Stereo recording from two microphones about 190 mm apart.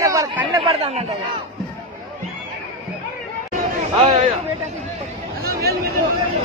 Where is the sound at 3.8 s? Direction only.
30° right (ahead or behind).